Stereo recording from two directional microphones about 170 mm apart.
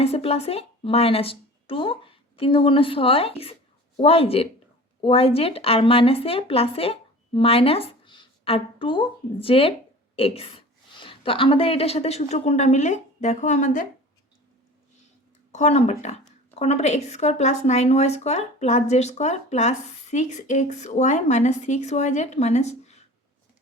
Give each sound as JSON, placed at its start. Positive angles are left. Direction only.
{"t": 0.0, "sound": "a woman's voice", "side_deg": 35}
{"t": 15.5, "sound": "speech", "side_deg": 40}